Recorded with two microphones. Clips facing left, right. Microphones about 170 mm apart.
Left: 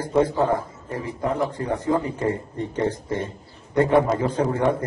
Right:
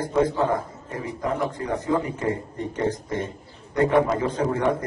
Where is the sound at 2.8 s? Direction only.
30° left (ahead or behind).